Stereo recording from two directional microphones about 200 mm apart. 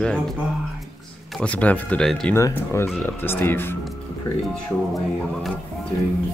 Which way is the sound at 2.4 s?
15° left (ahead or behind).